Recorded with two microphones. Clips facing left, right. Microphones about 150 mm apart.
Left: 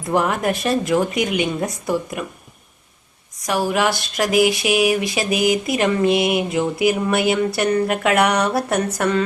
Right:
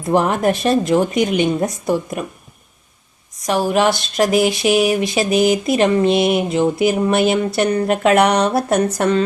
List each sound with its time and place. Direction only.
0.1 s speech: 30° right (ahead or behind)
3.4 s speech: 25° right (ahead or behind)